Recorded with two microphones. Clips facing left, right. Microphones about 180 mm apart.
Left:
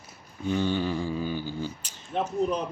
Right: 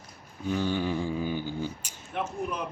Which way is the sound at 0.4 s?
5° right (ahead or behind).